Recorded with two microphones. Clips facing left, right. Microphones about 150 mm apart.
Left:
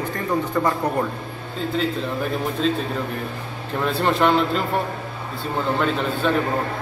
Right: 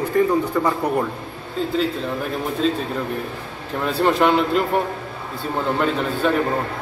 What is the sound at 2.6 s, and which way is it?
A man's voice, centre (ahead or behind).